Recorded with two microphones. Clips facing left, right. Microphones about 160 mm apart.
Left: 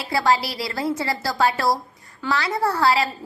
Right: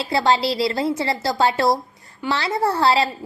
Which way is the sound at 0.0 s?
25° right (ahead or behind).